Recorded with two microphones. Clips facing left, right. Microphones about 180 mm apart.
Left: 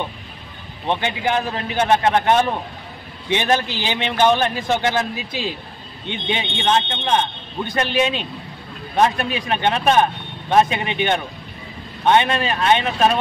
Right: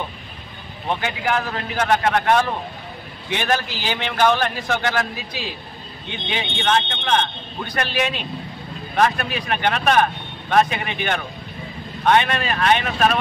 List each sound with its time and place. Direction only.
0.8 s a man's voice: 25° left (ahead or behind)